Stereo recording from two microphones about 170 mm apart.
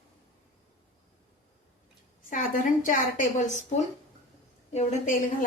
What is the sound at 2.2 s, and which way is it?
A woman's voice, 50° left (ahead or behind).